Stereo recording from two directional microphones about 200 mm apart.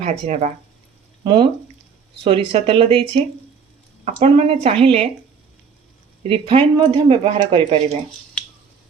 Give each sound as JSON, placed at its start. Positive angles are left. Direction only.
{"t": 0.0, "sound": "speech", "side_deg": -35}
{"t": 1.2, "sound": "speech", "side_deg": -25}
{"t": 6.2, "sound": "speech", "side_deg": -30}